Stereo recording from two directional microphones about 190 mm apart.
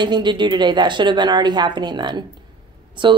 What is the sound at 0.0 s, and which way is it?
A woman's voice, 25° right (ahead or behind).